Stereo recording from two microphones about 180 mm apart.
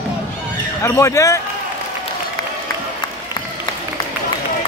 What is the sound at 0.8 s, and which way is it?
Speech, 15° left (ahead or behind).